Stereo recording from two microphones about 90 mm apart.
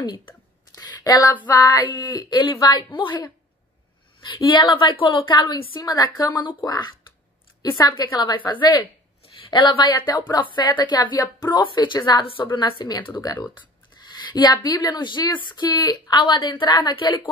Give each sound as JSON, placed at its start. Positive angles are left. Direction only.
{"t": 0.0, "sound": "speech", "side_deg": 55}
{"t": 0.7, "sound": "a sound", "side_deg": 50}
{"t": 1.5, "sound": "speech", "side_deg": 45}
{"t": 2.7, "sound": "a woman's voice", "side_deg": 65}
{"t": 4.5, "sound": "a woman's voice", "side_deg": 65}
{"t": 5.8, "sound": "speech", "side_deg": 40}
{"t": 7.6, "sound": "a woman's voice", "side_deg": 35}
{"t": 8.0, "sound": "a woman's voice", "side_deg": 50}
{"t": 11.6, "sound": "a woman's voice", "side_deg": 60}